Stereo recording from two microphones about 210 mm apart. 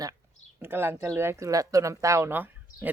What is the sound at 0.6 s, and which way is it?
Speech, 10° right (ahead or behind).